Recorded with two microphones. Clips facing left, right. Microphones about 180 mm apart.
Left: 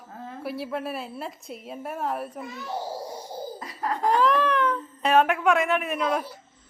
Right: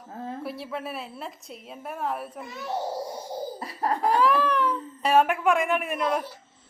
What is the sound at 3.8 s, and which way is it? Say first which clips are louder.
Laughter: right 1 dB; 35° right (ahead or behind).